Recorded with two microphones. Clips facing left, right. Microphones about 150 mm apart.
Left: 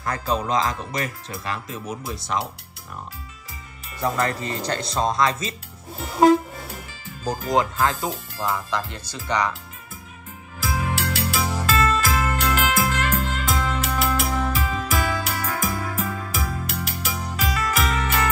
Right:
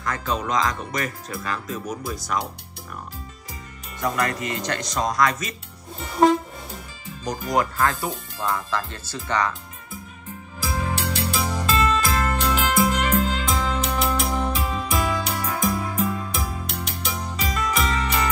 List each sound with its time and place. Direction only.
0.0 s speech: 35° left (ahead or behind)
4.0 s speech: 30° left (ahead or behind)
5.9 s music: centre (ahead or behind)
7.2 s speech: 25° left (ahead or behind)
10.6 s music: centre (ahead or behind)